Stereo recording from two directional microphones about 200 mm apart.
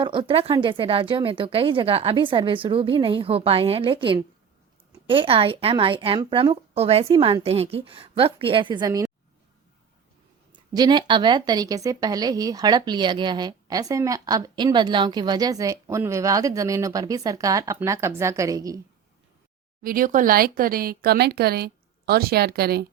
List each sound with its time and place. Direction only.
0.0 s speech: 25° right (ahead or behind)
10.8 s a woman's voice: 20° right (ahead or behind)
19.8 s speech: 45° right (ahead or behind)